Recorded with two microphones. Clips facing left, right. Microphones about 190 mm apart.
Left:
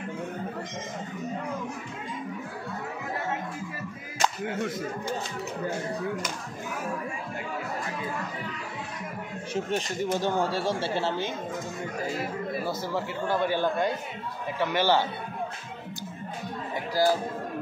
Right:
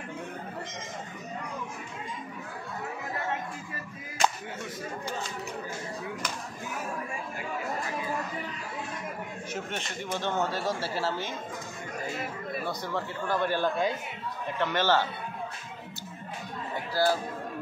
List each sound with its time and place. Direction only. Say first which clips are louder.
4.5 s speech: left 8 dB; 70° left (ahead or behind)
9.5 s speech: left 9 dB; 35° left (ahead or behind)
12.6 s speech: left 3 dB; 5° left (ahead or behind)
14.6 s speech: left 2 dB; 10° left (ahead or behind)
16.9 s speech: left 2 dB; 15° left (ahead or behind)